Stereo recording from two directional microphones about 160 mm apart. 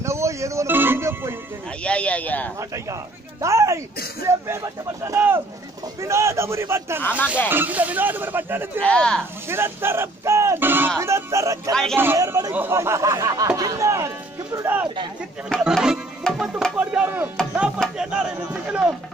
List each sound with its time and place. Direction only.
0.0 s music: 20° right (ahead or behind)
1.8 s speech: 5° left (ahead or behind)
2.7 s speech: 20° right (ahead or behind)
7.0 s speech: 10° left (ahead or behind)
7.4 s speech: 10° right (ahead or behind)
8.8 s speech: 5° left (ahead or behind)
9.5 s speech: 15° right (ahead or behind)
11.7 s speech: 5° left (ahead or behind)
12.0 s speech: 15° right (ahead or behind)
15.5 s speech: centre (ahead or behind)